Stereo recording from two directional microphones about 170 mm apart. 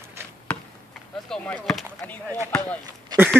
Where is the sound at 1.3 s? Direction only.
5° left (ahead or behind).